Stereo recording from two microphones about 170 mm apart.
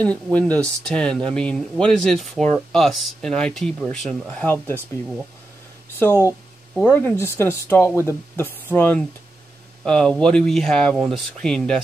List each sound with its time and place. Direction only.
0.0 s speech: 10° left (ahead or behind)
5.9 s speech: 15° left (ahead or behind)